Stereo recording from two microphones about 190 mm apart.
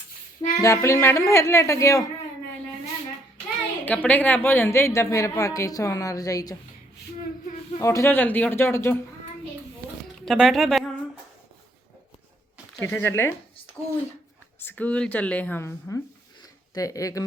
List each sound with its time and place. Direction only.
0.6 s a woman's voice: 15° left (ahead or behind)
3.8 s a woman's voice: 10° left (ahead or behind)
7.8 s a woman's voice: 15° left (ahead or behind)
10.2 s a sound: centre (ahead or behind)
12.8 s a woman's voice: 10° left (ahead or behind)
14.6 s a woman's voice: 10° left (ahead or behind)